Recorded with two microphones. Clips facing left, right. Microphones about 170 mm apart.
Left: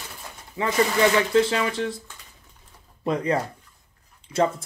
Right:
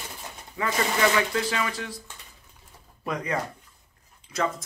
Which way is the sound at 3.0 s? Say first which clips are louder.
Left 6 dB; 30° left (ahead or behind).